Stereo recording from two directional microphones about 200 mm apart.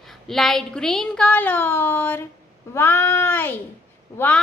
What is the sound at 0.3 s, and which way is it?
A woman's voice, centre (ahead or behind).